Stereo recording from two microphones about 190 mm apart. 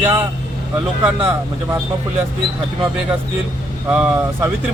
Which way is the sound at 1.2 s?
10° right (ahead or behind).